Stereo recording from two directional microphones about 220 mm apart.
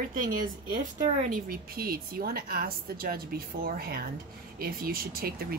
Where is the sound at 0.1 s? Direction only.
40° right (ahead or behind).